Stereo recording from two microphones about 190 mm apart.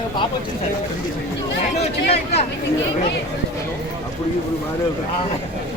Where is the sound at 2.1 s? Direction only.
35° left (ahead or behind).